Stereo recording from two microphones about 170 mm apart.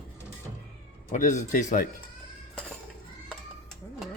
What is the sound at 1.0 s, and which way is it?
Speech, 50° left (ahead or behind).